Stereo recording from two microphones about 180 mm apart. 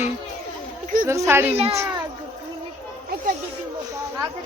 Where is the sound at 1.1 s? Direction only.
15° right (ahead or behind).